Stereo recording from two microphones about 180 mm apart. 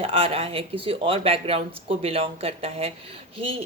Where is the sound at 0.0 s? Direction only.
30° right (ahead or behind).